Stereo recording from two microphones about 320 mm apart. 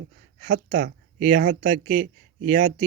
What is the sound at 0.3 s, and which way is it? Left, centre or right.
Speech, right.